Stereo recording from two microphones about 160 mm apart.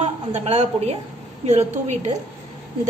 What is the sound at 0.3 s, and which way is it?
A woman's voice, 40° right (ahead or behind).